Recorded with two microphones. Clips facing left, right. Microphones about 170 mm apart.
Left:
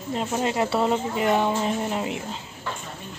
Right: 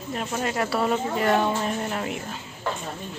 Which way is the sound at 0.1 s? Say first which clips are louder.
Left 3 dB; 20° left (ahead or behind).